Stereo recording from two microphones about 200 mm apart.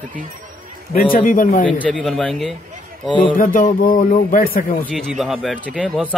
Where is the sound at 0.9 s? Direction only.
45° left (ahead or behind).